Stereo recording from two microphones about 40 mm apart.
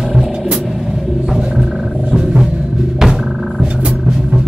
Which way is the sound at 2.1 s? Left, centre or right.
Centre.